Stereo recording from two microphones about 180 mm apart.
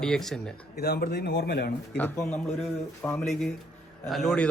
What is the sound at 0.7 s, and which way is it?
A man's voice, 60° left (ahead or behind).